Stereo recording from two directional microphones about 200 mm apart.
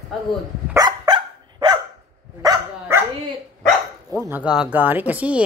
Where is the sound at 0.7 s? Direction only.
20° right (ahead or behind).